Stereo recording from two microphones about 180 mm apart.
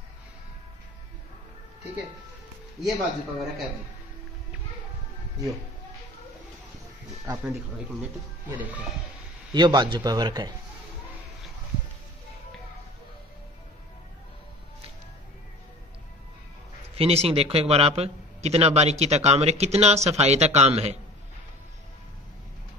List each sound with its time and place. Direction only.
2.8 s speech: centre (ahead or behind)
9.5 s speech: 25° right (ahead or behind)
16.9 s a man's voice: 35° right (ahead or behind)